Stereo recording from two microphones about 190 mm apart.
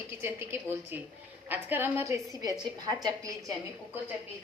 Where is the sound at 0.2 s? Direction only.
10° right (ahead or behind).